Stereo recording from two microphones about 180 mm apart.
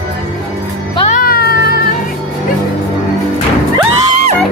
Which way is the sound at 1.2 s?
55° left (ahead or behind).